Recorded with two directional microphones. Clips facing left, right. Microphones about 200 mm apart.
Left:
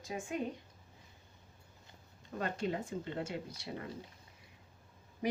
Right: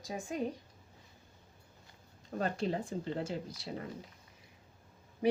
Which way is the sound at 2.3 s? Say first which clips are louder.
Right 3 dB; 35° right (ahead or behind).